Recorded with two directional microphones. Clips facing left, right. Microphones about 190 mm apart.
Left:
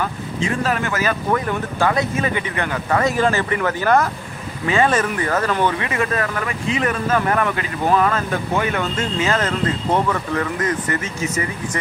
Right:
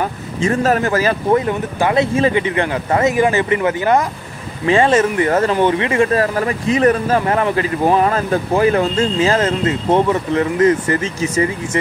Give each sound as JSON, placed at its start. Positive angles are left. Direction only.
{"t": 0.0, "sound": "speech", "side_deg": -40}
{"t": 1.4, "sound": "speech", "side_deg": -20}
{"t": 4.6, "sound": "speech", "side_deg": -30}